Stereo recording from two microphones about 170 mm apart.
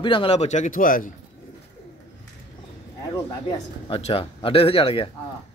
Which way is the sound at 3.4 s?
35° left (ahead or behind).